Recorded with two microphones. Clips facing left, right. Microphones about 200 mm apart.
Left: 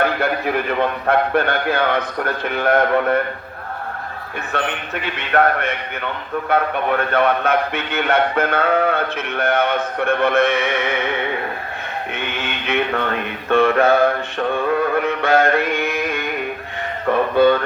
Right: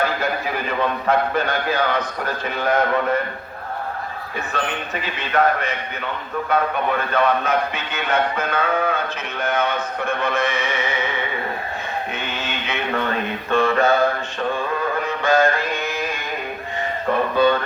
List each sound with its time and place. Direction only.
0.0 s a man's voice: 60° left (ahead or behind)
4.5 s a man's voice: 60° left (ahead or behind)
12.1 s a sound: 60° left (ahead or behind)
13.5 s a man's voice: 60° left (ahead or behind)
14.5 s music: 60° left (ahead or behind)